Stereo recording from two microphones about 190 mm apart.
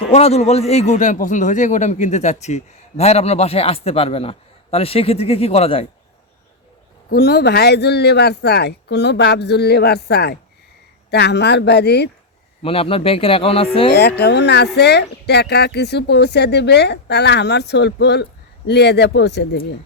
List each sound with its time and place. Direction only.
0.1 s a man's voice: 35° left (ahead or behind)
7.1 s speech: 55° left (ahead or behind)
12.6 s a man's voice: 30° left (ahead or behind)
13.9 s speech: 60° left (ahead or behind)